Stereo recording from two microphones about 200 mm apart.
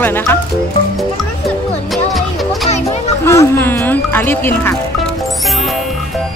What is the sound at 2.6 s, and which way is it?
Music, 35° left (ahead or behind).